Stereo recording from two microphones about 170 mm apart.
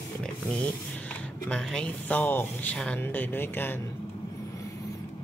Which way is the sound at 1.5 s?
5° left (ahead or behind).